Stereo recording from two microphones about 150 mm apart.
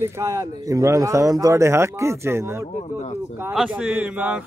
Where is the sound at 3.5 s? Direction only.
5° right (ahead or behind).